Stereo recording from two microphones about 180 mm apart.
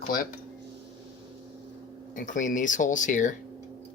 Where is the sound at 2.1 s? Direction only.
45° left (ahead or behind).